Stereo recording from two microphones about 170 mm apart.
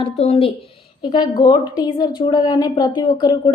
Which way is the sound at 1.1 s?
25° left (ahead or behind).